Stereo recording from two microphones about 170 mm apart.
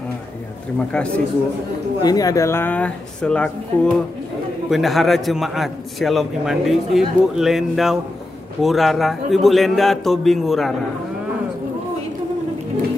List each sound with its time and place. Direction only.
0.7 s speech: 5° left (ahead or behind)
2.0 s a man's voice: 20° left (ahead or behind); by 10.7 s centre (ahead or behind)